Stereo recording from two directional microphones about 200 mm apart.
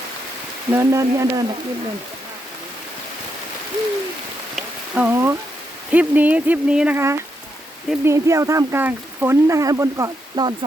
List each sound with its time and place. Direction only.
0.7 s speech: 15° right (ahead or behind)
4.5 s a sound: 10° right (ahead or behind)
5.9 s speech: 5° right (ahead or behind)